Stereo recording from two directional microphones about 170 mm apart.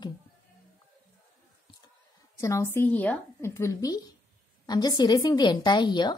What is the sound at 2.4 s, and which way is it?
A woman's voice, 15° left (ahead or behind).